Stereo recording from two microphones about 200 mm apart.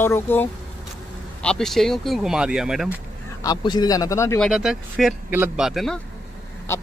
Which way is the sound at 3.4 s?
20° left (ahead or behind).